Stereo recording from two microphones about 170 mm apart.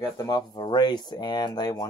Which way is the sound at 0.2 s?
20° left (ahead or behind).